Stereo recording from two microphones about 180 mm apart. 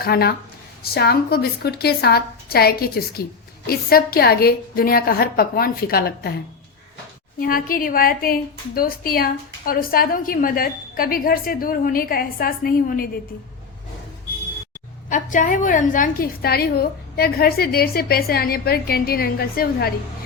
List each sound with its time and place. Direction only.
0.0 s a woman's voice: 60° left (ahead or behind)
7.3 s a woman's voice: 50° left (ahead or behind)
15.1 s a woman's voice: 45° left (ahead or behind)